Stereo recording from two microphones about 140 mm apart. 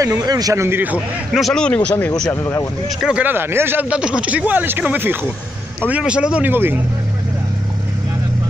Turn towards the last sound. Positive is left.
turn(degrees=-15)  # may be behind; listen again after turning